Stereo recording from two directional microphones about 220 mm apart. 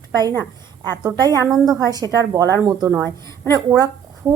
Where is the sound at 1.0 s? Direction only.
15° right (ahead or behind).